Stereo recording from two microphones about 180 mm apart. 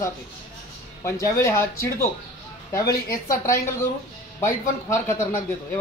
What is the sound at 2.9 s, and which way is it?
Speech, 55° left (ahead or behind).